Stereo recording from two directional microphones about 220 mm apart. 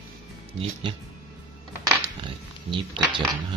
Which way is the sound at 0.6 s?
25° right (ahead or behind).